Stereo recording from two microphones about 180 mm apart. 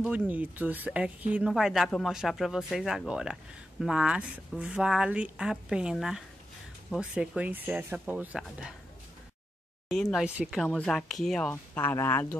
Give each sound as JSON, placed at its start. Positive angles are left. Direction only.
{"t": 0.3, "sound": "speech", "side_deg": -10}
{"t": 10.1, "sound": "speech", "side_deg": -5}